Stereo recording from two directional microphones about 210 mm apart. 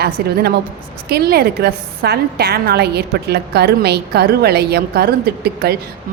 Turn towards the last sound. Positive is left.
turn(degrees=-50)  # may be behind; listen again after turning